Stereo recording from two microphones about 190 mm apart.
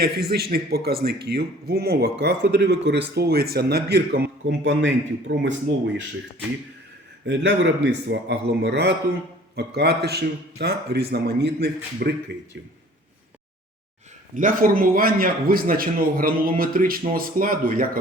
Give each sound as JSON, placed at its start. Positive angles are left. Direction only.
{"t": 0.0, "sound": "a man's voice", "side_deg": -55}
{"t": 7.3, "sound": "a man's voice", "side_deg": -70}
{"t": 14.3, "sound": "a man's voice", "side_deg": -45}